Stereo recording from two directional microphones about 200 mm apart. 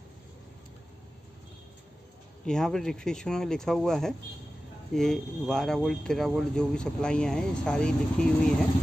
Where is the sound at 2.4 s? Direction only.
5° left (ahead or behind).